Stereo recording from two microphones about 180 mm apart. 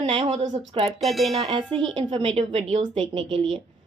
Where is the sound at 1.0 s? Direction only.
Centre (ahead or behind).